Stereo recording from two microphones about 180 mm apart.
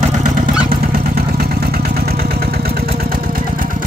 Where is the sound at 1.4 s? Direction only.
60° right (ahead or behind).